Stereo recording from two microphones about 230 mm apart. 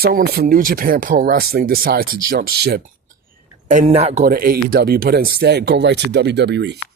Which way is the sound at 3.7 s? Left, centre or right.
Right.